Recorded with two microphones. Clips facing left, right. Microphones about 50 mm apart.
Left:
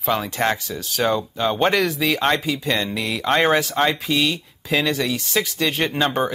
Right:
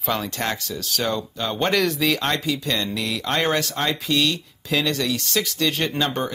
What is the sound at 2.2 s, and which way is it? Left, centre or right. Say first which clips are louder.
Speech: left 3 dB; centre.